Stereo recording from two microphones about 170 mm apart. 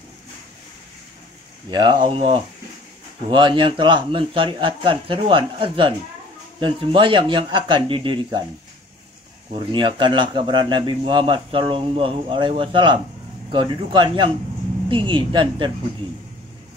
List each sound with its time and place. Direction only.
1.7 s speech: 25° right (ahead or behind)
9.5 s speech: 30° right (ahead or behind)